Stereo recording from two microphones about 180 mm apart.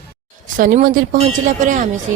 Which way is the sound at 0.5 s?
45° right (ahead or behind).